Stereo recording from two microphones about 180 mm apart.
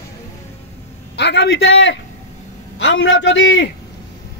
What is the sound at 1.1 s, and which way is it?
A man's voice, 75° left (ahead or behind).